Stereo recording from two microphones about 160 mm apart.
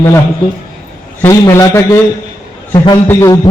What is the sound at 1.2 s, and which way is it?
A man's voice, 15° left (ahead or behind).